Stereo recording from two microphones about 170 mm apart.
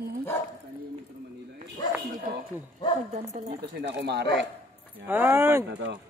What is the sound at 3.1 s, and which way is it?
Speech, 40° right (ahead or behind).